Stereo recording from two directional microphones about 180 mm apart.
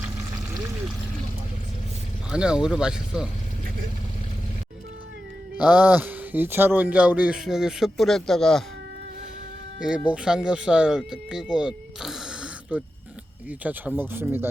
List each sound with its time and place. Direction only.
2.3 s speech: 5° right (ahead or behind)
5.5 s speech: 5° right (ahead or behind)
10.1 s speech: 5° right (ahead or behind)